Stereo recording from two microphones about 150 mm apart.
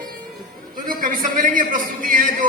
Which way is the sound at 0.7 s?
65° right (ahead or behind).